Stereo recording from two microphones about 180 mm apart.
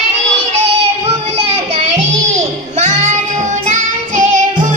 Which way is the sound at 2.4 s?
40° right (ahead or behind).